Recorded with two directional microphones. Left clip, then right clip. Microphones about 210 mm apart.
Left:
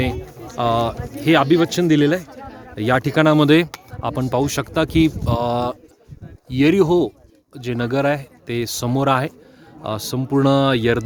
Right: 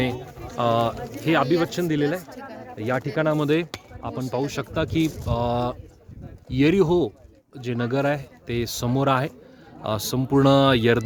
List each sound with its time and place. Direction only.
0.0 s speech: 25° left (ahead or behind)
1.3 s a man's voice: 45° left (ahead or behind); by 9.3 s 20° left (ahead or behind)
9.8 s speech: 5° left (ahead or behind)